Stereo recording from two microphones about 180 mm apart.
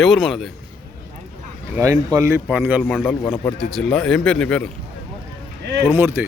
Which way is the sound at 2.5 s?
5° right (ahead or behind).